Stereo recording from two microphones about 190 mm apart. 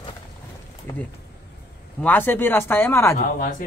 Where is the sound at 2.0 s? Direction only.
10° left (ahead or behind).